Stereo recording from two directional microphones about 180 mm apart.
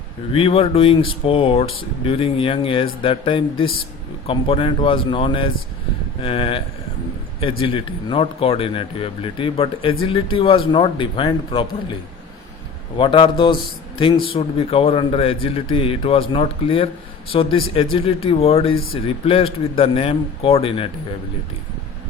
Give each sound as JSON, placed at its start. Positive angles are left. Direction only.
{"t": 0.3, "sound": "a man's voice", "side_deg": 30}
{"t": 13.0, "sound": "a man's voice", "side_deg": 25}